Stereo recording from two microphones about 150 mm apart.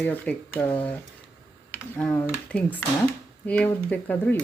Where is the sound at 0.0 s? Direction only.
10° left (ahead or behind).